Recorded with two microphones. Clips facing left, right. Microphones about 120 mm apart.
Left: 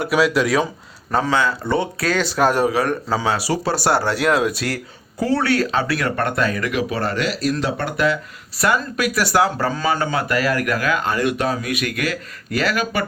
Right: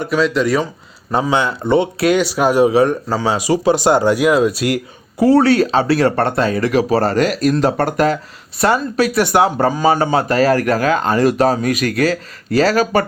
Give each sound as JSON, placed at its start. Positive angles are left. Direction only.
{"t": 0.0, "sound": "speech", "side_deg": 5}
{"t": 1.3, "sound": "speech", "side_deg": -20}
{"t": 2.2, "sound": "speech", "side_deg": -10}
{"t": 2.6, "sound": "speech", "side_deg": -20}
{"t": 4.4, "sound": "speech", "side_deg": 0}
{"t": 5.2, "sound": "speech", "side_deg": -30}
{"t": 8.5, "sound": "speech", "side_deg": -25}